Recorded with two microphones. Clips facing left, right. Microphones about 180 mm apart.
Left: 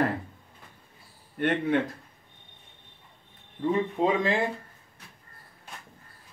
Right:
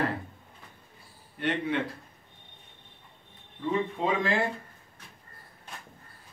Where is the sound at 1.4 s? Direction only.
55° left (ahead or behind).